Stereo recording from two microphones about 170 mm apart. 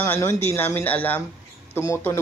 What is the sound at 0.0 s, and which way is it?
Speech, 15° left (ahead or behind).